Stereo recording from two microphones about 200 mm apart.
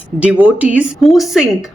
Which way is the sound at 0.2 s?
5° right (ahead or behind).